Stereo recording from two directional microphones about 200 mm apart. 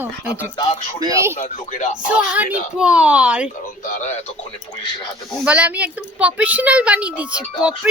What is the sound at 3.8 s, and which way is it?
Speech, 35° left (ahead or behind).